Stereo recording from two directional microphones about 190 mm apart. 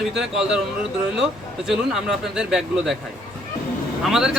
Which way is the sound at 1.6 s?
Centre (ahead or behind).